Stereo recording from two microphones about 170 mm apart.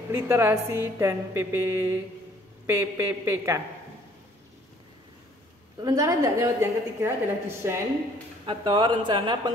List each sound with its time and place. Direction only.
0.1 s a woman's voice: 15° right (ahead or behind)
5.9 s a woman's voice: 20° right (ahead or behind)
8.5 s speech: 30° right (ahead or behind)